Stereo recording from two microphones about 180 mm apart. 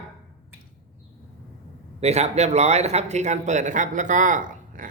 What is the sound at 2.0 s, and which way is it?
A man's voice, 35° right (ahead or behind).